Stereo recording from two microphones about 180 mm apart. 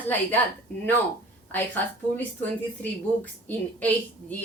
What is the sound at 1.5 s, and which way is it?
A woman's voice, 10° left (ahead or behind).